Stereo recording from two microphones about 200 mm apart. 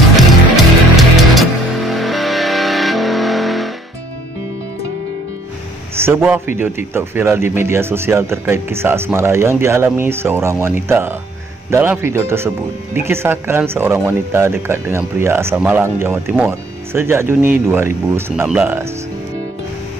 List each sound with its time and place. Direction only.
0.1 s music: centre (ahead or behind)
5.9 s a man's voice: 10° right (ahead or behind)